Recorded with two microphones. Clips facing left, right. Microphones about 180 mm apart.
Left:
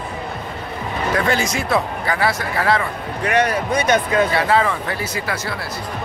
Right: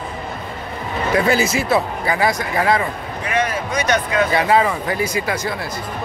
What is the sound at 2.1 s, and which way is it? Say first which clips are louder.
Speech: right 2 dB; 15° right (ahead or behind).